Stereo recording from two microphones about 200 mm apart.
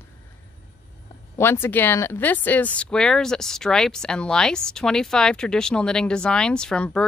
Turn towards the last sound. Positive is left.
turn(degrees=5)  # may be behind; listen again after turning